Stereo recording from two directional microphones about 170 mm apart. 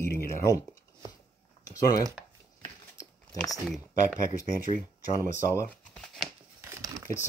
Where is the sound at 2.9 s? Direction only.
20° left (ahead or behind).